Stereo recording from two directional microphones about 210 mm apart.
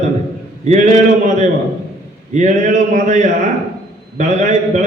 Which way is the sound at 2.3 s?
35° right (ahead or behind).